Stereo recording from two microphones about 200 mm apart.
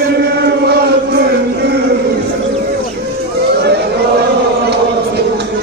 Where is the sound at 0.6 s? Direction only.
55° right (ahead or behind).